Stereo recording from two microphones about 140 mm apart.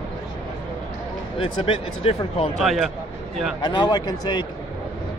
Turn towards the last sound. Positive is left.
turn(degrees=30)  # may be behind; listen again after turning